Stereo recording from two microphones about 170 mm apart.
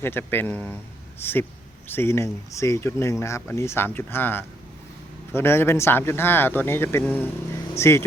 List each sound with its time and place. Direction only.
0.0 s speech: 10° left (ahead or behind)
7.7 s speech: 15° left (ahead or behind)